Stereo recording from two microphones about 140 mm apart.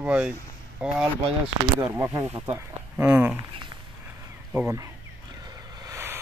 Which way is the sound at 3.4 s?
35° right (ahead or behind).